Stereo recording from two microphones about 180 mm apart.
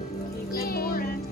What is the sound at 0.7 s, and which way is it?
Music, 55° left (ahead or behind).